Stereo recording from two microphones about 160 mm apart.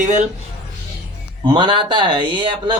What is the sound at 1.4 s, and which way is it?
Speech, 30° right (ahead or behind).